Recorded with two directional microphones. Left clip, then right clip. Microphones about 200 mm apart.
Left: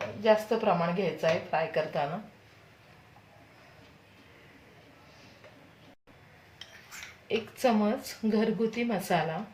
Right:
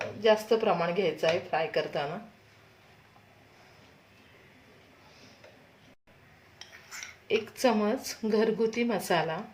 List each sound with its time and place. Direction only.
0.2 s speech: 30° right (ahead or behind)
7.3 s speech: 30° right (ahead or behind)